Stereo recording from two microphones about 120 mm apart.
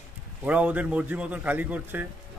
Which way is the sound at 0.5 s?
10° right (ahead or behind).